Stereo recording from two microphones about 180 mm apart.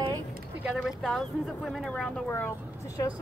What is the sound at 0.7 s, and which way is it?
Speech, centre (ahead or behind).